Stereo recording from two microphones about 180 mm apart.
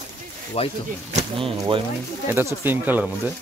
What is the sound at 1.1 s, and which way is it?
Speech, 35° right (ahead or behind).